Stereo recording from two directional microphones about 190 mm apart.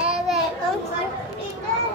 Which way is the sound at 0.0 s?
5° right (ahead or behind).